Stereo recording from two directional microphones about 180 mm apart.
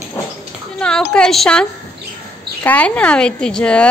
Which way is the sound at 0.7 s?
5° left (ahead or behind).